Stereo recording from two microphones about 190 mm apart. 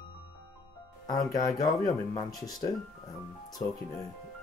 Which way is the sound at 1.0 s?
20° left (ahead or behind).